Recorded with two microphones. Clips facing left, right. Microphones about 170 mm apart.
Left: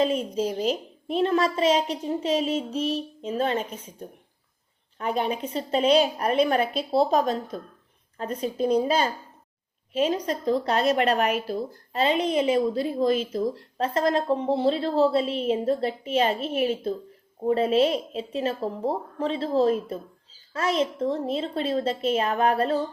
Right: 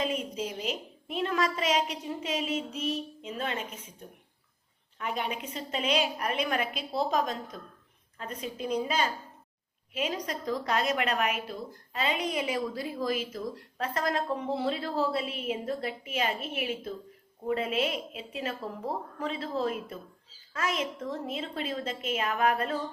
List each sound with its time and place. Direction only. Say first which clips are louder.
0.0 s a child's voice: left 8 dB; 35° left (ahead or behind)
4.9 s a child's voice: left 7 dB; 35° left (ahead or behind)